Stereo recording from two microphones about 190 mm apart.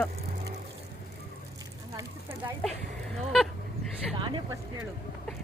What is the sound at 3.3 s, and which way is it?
Honk, centre (ahead or behind).